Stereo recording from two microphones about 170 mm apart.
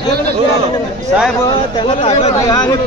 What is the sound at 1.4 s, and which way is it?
Speech, 25° left (ahead or behind).